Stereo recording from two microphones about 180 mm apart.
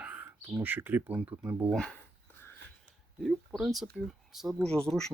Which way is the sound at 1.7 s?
5° left (ahead or behind).